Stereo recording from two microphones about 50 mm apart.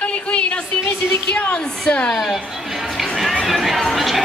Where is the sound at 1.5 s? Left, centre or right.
Left.